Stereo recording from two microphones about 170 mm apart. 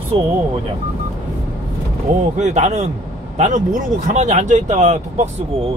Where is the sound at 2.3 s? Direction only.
45° right (ahead or behind).